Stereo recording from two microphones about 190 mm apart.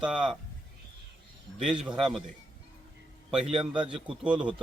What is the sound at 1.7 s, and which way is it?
Speech, 5° right (ahead or behind).